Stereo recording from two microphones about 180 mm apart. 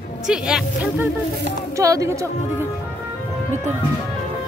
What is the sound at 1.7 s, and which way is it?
Speech, 20° right (ahead or behind).